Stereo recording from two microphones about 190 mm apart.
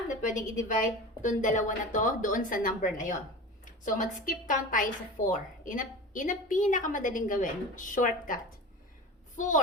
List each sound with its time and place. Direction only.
0.2 s a woman's voice: 40° left (ahead or behind)